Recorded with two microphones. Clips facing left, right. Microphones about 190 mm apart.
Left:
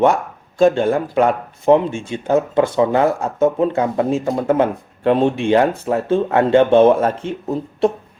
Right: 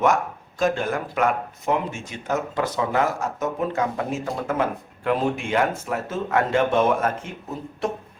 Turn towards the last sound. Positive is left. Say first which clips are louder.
# left 10 dB
turn(degrees=30)  # may be behind; listen again after turning